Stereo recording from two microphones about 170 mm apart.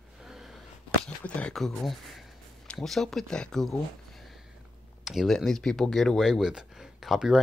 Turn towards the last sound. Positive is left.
turn(degrees=0)  # may be behind; listen again after turning